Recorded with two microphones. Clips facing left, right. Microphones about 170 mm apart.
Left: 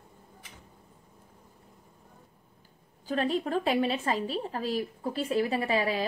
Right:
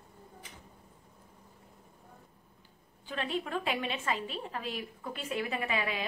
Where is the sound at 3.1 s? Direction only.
40° left (ahead or behind).